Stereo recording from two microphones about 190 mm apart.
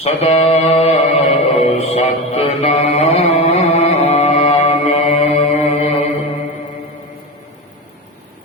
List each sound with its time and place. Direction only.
0.0 s mantra: 35° left (ahead or behind)